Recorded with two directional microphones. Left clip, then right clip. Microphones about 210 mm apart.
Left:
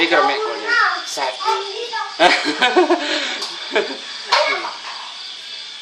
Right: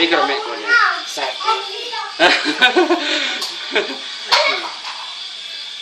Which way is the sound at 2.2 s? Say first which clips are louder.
Right 1 dB; 5° right (ahead or behind).